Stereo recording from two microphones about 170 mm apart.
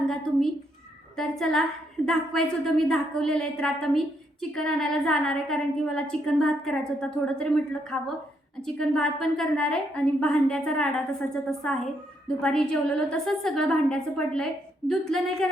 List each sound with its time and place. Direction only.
0.1 s a woman's voice: centre (ahead or behind)